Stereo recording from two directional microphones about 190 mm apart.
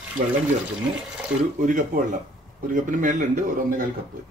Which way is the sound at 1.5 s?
45° right (ahead or behind).